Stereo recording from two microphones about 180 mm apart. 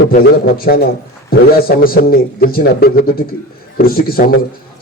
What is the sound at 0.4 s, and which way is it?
Speech, 55° left (ahead or behind).